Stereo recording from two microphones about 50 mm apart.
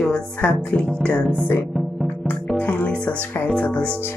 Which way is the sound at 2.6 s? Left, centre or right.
Left.